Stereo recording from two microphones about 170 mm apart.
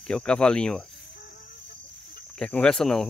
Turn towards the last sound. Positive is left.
turn(degrees=5)  # may be behind; listen again after turning